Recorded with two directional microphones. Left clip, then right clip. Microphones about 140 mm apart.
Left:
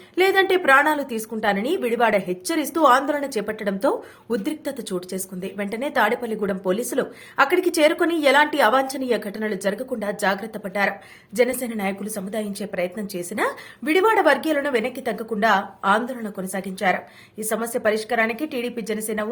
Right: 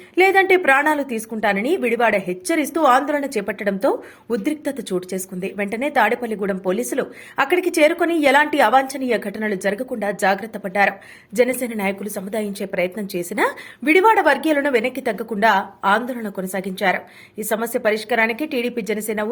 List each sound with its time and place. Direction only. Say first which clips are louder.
0.2 s a woman's voice: right 4 dB; 25° right (ahead or behind)